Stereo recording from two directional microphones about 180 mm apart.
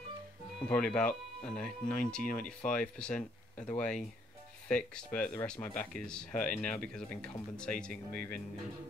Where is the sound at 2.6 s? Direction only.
5° left (ahead or behind).